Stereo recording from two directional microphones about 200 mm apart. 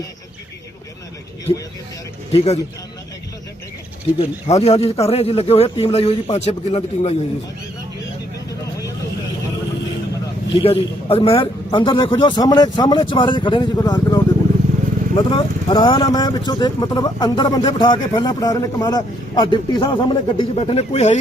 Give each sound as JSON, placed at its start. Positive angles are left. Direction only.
{"t": 2.3, "sound": "a man's voice", "side_deg": 30}
{"t": 4.2, "sound": "a man's voice", "side_deg": 30}
{"t": 10.5, "sound": "speech", "side_deg": 30}